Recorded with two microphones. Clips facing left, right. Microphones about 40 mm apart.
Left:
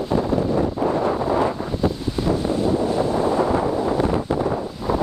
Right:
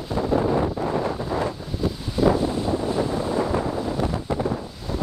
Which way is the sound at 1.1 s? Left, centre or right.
Left.